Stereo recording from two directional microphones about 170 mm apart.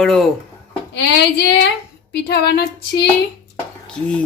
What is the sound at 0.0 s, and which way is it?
Speech, centre (ahead or behind).